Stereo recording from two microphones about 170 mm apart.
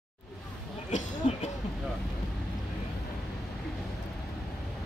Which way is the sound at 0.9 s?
40° left (ahead or behind).